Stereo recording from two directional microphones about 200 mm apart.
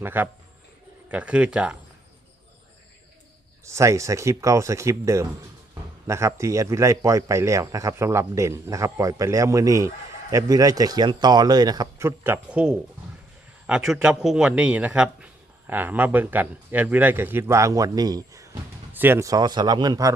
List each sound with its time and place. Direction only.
0.0 s speech: 10° right (ahead or behind)
3.7 s speech: 15° right (ahead or behind)